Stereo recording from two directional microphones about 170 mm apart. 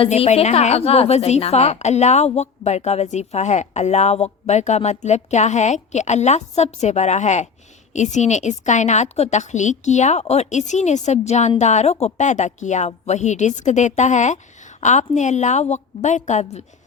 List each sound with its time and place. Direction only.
0.0 s a woman's voice: 40° left (ahead or behind)